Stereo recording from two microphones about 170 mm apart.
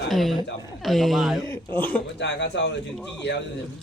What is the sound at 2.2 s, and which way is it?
Speech, 90° left.